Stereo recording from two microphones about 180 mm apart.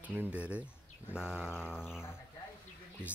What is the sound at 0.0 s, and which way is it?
Speech, 10° right (ahead or behind).